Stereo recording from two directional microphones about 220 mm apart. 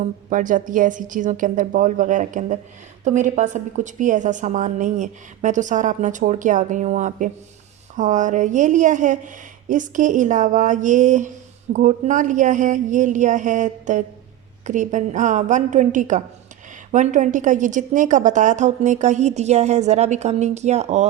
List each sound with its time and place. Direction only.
0.3 s a woman's voice: 35° right (ahead or behind)